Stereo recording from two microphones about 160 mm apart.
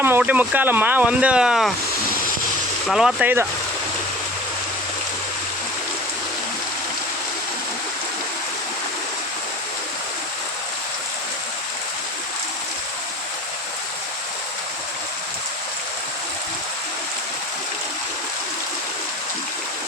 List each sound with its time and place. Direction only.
0.0 s speech: 10° right (ahead or behind)
2.8 s speech: centre (ahead or behind)